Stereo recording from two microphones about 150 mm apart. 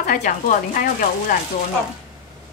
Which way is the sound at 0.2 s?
60° left (ahead or behind).